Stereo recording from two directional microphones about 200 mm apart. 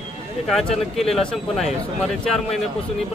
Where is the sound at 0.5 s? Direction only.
Centre (ahead or behind).